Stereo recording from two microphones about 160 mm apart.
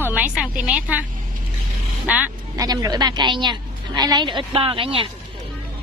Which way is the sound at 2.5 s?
25° right (ahead or behind).